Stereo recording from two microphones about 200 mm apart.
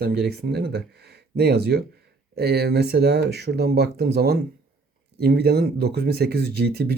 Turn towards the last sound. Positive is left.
turn(degrees=-55)  # may be behind; listen again after turning